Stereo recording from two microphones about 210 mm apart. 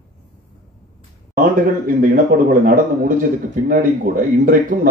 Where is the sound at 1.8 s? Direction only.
40° right (ahead or behind).